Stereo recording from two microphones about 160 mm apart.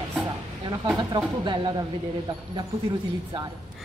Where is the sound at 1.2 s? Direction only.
30° right (ahead or behind).